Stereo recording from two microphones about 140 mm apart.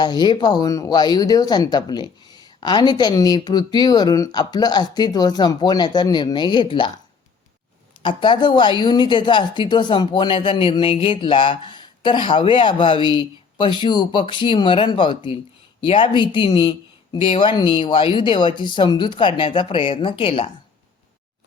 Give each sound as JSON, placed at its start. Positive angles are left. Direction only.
{"t": 0.0, "sound": "speech", "side_deg": 30}
{"t": 8.0, "sound": "speech", "side_deg": 35}